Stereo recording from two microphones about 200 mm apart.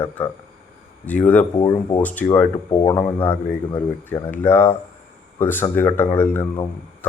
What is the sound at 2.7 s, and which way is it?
Speech, 20° left (ahead or behind).